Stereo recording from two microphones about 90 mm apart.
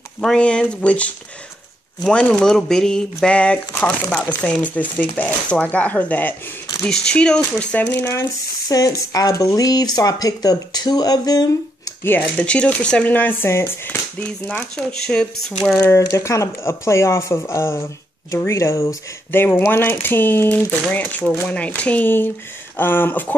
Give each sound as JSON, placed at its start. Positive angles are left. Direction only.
{"t": 0.2, "sound": "speech", "side_deg": 10}
{"t": 8.1, "sound": "speech", "side_deg": 35}
{"t": 12.0, "sound": "speech", "side_deg": 25}
{"t": 12.4, "sound": "speech", "side_deg": 15}
{"t": 14.5, "sound": "speech", "side_deg": 10}
{"t": 15.7, "sound": "speech", "side_deg": 30}